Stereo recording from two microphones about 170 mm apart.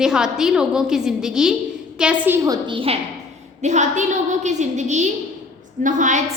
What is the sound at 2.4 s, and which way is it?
Speech, 25° right (ahead or behind).